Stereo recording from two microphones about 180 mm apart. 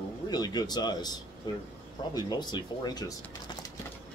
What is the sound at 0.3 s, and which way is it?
Speech, 20° left (ahead or behind).